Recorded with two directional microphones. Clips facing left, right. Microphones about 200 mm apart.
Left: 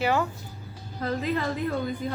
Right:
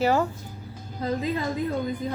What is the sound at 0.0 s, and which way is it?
Speech, 40° right (ahead or behind).